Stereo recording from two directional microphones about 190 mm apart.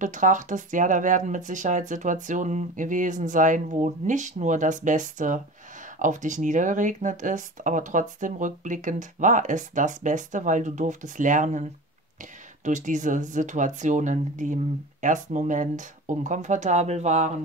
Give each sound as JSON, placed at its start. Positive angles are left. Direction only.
{"t": 0.0, "sound": "speech", "side_deg": -40}
{"t": 12.6, "sound": "speech", "side_deg": -40}